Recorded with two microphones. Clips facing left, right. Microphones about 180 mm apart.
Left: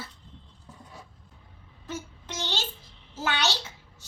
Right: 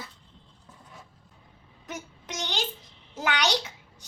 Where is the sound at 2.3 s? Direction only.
15° right (ahead or behind).